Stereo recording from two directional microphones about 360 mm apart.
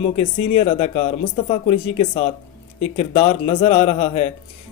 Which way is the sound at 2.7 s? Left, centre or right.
Centre.